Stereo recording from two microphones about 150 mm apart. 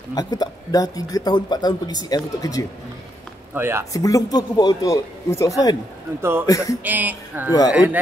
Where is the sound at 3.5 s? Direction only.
15° right (ahead or behind).